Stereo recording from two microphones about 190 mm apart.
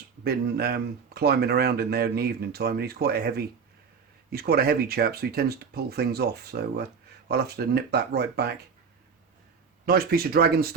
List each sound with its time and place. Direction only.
0.3 s speech: 55° right (ahead or behind)
9.8 s speech: 55° right (ahead or behind)